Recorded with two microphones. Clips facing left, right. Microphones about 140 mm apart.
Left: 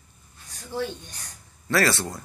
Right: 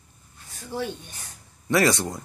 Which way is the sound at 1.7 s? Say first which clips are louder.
Right 2 dB; 20° right (ahead or behind).